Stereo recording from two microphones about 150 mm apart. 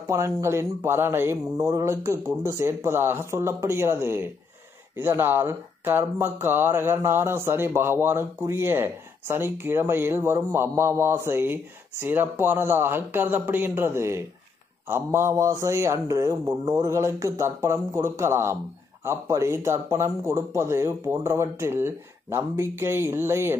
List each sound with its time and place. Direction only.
0.0 s a man's voice: 20° right (ahead or behind)